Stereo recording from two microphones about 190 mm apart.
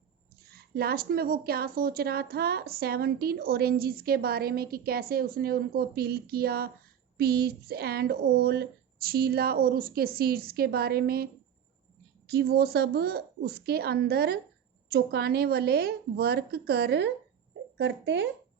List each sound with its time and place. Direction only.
0.5 s speech: 55° right (ahead or behind)
12.3 s a woman's voice: 55° right (ahead or behind)
17.7 s speech: 70° right (ahead or behind)